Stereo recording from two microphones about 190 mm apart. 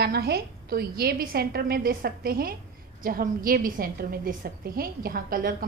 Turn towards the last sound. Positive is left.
turn(degrees=-50)  # may be behind; listen again after turning